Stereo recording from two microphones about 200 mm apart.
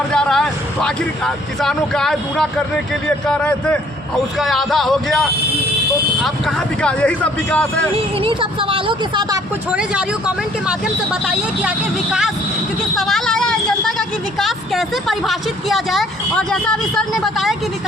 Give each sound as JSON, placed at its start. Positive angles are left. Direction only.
{"t": 0.1, "sound": "speech", "side_deg": 5}
{"t": 6.2, "sound": "speech", "side_deg": 5}
{"t": 8.2, "sound": "a woman's voice", "side_deg": -25}
{"t": 9.7, "sound": "speech", "side_deg": -5}
{"t": 13.0, "sound": "a sound", "side_deg": 0}
{"t": 14.3, "sound": "speech", "side_deg": 0}